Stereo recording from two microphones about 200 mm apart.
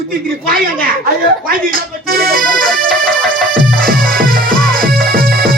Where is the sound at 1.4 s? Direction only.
45° right (ahead or behind).